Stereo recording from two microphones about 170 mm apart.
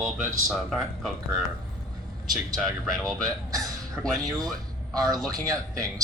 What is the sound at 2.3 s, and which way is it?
Speech, centre (ahead or behind).